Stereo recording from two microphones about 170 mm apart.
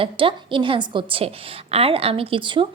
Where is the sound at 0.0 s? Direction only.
30° right (ahead or behind).